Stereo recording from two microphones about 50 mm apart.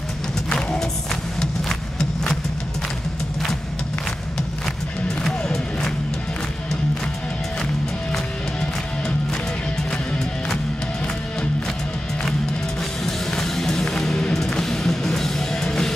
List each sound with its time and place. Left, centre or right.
0.5 s music: centre
5.2 s music: centre
13.0 s music: centre